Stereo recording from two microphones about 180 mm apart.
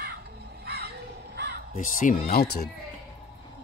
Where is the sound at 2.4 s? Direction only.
60° left (ahead or behind).